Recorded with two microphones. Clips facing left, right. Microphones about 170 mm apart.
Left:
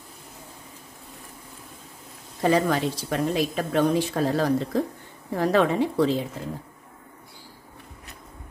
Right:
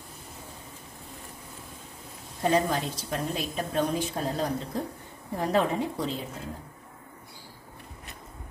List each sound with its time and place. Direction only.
2.4 s a woman's voice: 80° left